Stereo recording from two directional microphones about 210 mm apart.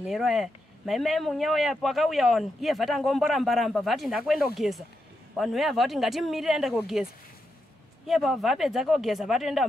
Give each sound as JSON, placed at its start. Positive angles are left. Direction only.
{"t": 0.0, "sound": "speech", "side_deg": 0}
{"t": 8.1, "sound": "speech", "side_deg": 0}